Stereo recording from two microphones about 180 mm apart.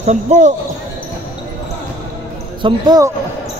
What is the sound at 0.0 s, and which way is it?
Speech, 40° right (ahead or behind).